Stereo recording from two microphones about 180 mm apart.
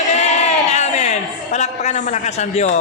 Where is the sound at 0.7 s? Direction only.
40° left (ahead or behind).